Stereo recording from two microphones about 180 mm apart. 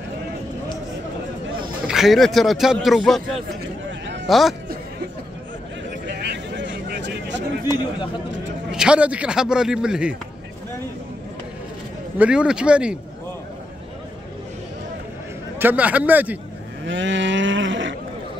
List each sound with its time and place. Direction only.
1.9 s speech: centre (ahead or behind)
4.3 s speech: centre (ahead or behind)
6.0 s a sound: 70° right (ahead or behind)
8.7 s speech: 5° right (ahead or behind)
12.2 s speech: 5° right (ahead or behind)
15.6 s a man's voice: 10° right (ahead or behind)
16.8 s cattle: 90° right